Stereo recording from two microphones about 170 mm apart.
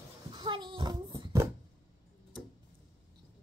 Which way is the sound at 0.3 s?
25° right (ahead or behind).